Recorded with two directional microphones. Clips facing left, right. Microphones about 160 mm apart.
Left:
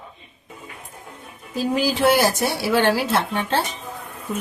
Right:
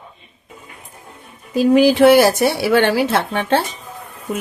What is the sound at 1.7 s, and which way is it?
Speech, 65° right (ahead or behind).